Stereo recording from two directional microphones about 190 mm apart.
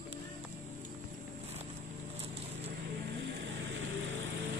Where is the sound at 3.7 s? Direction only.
90° right.